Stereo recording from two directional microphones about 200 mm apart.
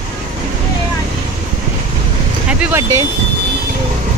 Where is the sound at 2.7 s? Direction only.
15° right (ahead or behind).